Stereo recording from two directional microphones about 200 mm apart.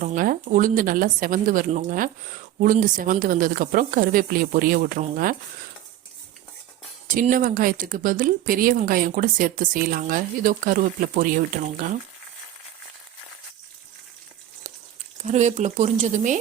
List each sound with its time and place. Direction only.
0.0 s a woman's voice: 40° right (ahead or behind)
7.1 s speech: 45° right (ahead or behind)
15.2 s speech: 35° right (ahead or behind)